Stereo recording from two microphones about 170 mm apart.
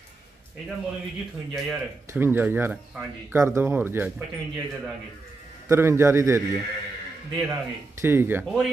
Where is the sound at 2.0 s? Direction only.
15° right (ahead or behind).